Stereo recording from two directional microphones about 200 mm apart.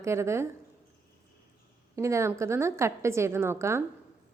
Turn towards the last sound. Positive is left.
turn(degrees=-15)  # may be behind; listen again after turning